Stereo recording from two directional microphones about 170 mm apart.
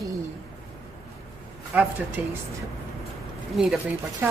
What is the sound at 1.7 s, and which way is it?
Speech, 10° right (ahead or behind).